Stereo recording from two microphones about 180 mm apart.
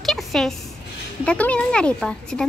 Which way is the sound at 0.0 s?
Centre (ahead or behind).